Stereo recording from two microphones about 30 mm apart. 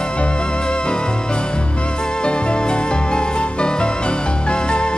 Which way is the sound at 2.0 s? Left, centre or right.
Left.